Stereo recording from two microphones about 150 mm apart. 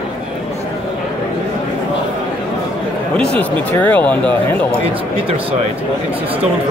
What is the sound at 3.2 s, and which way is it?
Speech, 10° left (ahead or behind).